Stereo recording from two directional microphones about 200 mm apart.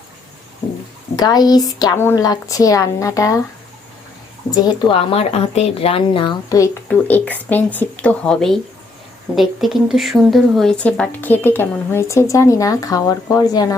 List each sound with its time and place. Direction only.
1.1 s speech: 20° left (ahead or behind)
4.9 s a woman's voice: 30° left (ahead or behind)
6.8 s speech: 10° left (ahead or behind)